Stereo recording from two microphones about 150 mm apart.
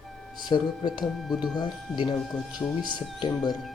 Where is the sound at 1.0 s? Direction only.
Centre (ahead or behind).